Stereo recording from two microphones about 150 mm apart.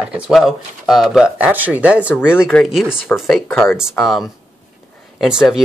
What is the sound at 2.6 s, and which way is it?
Speech, centre (ahead or behind).